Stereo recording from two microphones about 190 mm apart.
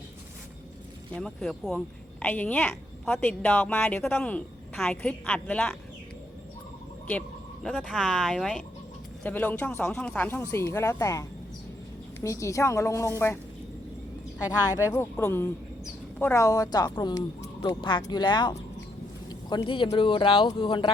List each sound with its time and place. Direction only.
1.1 s speech: 5° left (ahead or behind)
7.1 s a sound: 5° left (ahead or behind)
7.7 s speech: centre (ahead or behind)
14.6 s speech: 15° left (ahead or behind)